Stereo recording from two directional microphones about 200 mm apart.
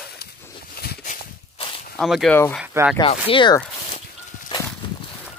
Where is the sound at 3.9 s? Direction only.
35° left (ahead or behind).